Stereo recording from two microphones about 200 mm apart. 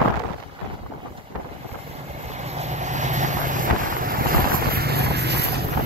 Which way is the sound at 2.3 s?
35° right (ahead or behind).